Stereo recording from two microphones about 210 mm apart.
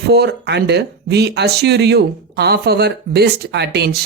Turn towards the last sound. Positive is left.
turn(degrees=-50)  # may be behind; listen again after turning